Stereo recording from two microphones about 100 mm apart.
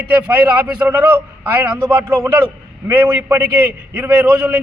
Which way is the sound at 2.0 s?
25° right (ahead or behind).